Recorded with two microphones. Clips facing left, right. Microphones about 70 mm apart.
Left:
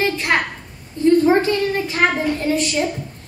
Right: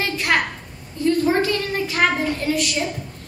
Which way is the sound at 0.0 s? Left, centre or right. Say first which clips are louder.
Left 2 dB; left.